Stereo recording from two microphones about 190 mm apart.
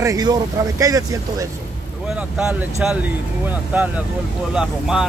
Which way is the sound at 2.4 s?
5° right (ahead or behind).